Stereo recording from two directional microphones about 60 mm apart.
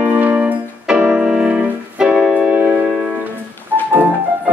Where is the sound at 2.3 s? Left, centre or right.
Right.